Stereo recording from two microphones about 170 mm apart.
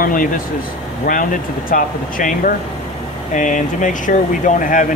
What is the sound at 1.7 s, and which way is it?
Speech, 50° left (ahead or behind).